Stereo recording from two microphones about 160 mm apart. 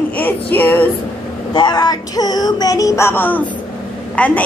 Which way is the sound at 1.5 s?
25° left (ahead or behind).